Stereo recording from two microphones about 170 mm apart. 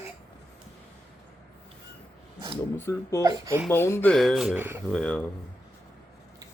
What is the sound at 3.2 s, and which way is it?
Speech, 20° right (ahead or behind).